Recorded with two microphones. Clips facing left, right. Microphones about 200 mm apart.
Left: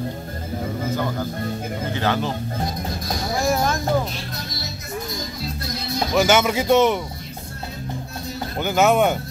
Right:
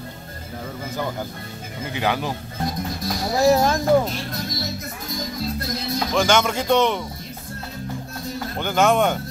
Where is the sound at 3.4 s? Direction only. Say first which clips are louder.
Right 5 dB; 35° right (ahead or behind).